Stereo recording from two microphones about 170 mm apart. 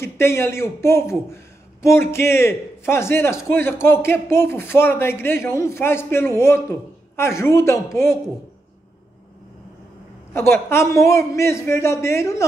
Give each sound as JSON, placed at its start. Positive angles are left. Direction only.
{"t": 0.0, "sound": "a man's voice", "side_deg": 15}
{"t": 10.3, "sound": "a man's voice", "side_deg": 15}